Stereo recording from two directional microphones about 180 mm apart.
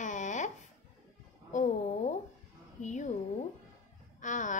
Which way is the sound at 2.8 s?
40° left (ahead or behind).